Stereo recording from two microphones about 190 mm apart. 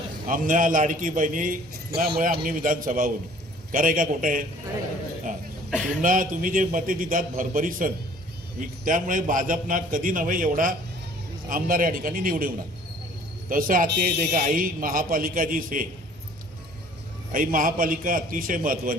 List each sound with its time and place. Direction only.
0.3 s a man's voice: 45° right (ahead or behind)
5.7 s speech: 5° right (ahead or behind)
6.0 s a man's voice: 45° right (ahead or behind)
17.3 s a man's voice: 45° right (ahead or behind)